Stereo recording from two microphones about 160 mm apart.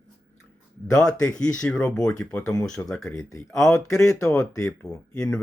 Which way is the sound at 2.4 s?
20° left (ahead or behind).